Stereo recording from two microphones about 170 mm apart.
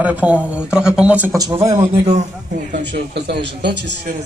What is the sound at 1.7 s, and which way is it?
Speech, 35° right (ahead or behind).